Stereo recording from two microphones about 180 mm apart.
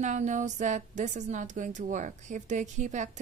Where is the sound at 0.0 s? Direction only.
45° right (ahead or behind).